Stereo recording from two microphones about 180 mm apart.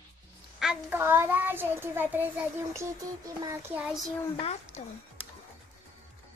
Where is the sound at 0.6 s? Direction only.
5° right (ahead or behind).